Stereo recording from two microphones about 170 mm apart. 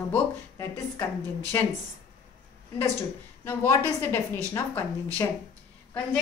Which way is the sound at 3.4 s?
10° left (ahead or behind).